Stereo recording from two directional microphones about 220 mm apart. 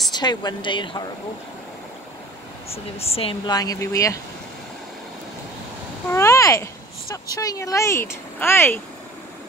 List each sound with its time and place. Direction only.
0.1 s speech: 20° left (ahead or behind)
2.7 s speech: 25° left (ahead or behind)
6.0 s a sound: 10° left (ahead or behind)
7.3 s speech: 15° left (ahead or behind)